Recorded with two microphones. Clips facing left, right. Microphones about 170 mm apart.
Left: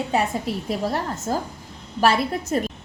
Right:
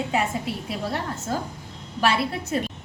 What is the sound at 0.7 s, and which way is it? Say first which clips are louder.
A woman's voice: left 5 dB; 40° left (ahead or behind).